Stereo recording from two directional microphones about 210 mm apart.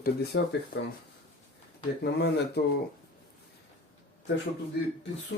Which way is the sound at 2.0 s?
55° left (ahead or behind).